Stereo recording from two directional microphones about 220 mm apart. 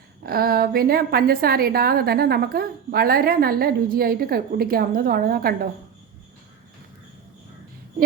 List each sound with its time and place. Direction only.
0.2 s a woman's voice: 45° right (ahead or behind)